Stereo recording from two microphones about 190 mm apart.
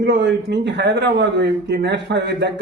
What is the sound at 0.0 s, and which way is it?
A man's voice, 65° right (ahead or behind).